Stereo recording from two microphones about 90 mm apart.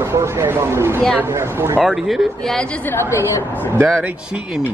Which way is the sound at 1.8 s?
Centre (ahead or behind).